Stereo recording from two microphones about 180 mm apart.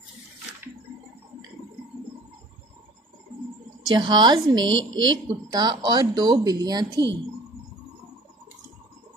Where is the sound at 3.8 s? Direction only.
25° right (ahead or behind).